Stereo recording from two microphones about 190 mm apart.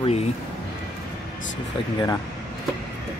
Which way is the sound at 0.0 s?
35° left (ahead or behind).